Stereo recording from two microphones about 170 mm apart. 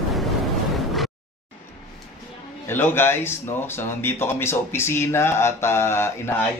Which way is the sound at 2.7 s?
15° left (ahead or behind).